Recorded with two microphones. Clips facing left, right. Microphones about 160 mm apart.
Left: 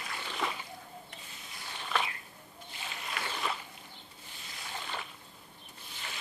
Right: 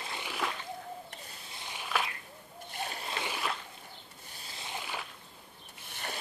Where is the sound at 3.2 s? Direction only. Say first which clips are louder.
Even; 5° right (ahead or behind).